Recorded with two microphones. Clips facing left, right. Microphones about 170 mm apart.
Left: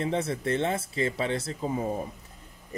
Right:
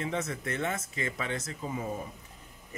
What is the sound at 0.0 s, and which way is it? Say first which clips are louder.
Speech: left 5 dB; 30° left (ahead or behind).